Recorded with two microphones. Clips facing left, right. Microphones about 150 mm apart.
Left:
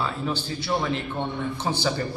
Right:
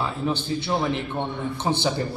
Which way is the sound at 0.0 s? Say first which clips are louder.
Right 2 dB; 20° right (ahead or behind).